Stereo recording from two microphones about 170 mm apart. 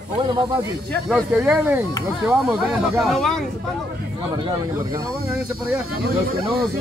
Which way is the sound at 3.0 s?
Centre (ahead or behind).